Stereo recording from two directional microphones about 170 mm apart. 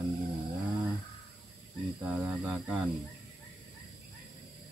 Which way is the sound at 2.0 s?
10° right (ahead or behind).